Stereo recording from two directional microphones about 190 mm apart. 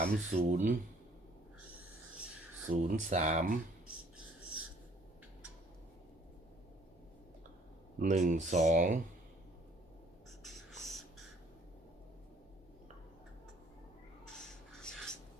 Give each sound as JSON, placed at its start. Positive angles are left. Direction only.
{"t": 0.0, "sound": "speech", "side_deg": -35}
{"t": 2.6, "sound": "speech", "side_deg": -40}
{"t": 7.9, "sound": "speech", "side_deg": -40}
{"t": 10.4, "sound": "writing", "side_deg": 0}
{"t": 14.3, "sound": "a sound", "side_deg": 5}